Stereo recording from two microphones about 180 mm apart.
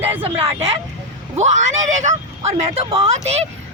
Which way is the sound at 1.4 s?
40° right (ahead or behind).